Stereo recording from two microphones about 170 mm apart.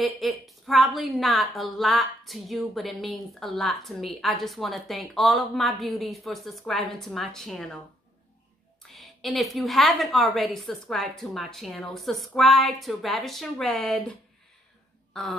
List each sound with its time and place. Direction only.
0.0 s a woman's voice: centre (ahead or behind)
8.9 s a woman's voice: centre (ahead or behind)